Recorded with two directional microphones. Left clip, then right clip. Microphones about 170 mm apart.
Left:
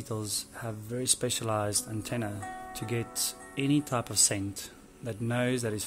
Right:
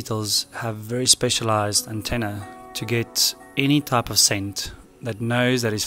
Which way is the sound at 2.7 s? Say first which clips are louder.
Right 13 dB; 25° right (ahead or behind).